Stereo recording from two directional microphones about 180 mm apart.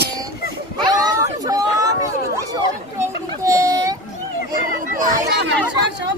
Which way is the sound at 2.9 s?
15° right (ahead or behind).